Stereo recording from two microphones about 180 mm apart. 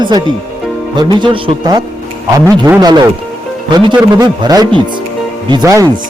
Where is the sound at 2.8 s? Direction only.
20° right (ahead or behind).